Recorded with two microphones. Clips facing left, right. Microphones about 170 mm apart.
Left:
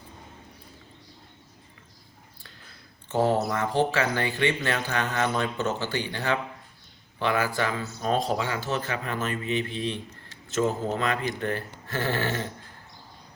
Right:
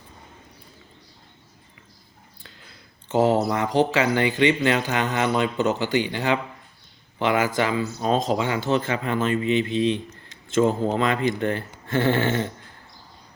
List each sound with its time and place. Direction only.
3.1 s a man's voice: 15° right (ahead or behind)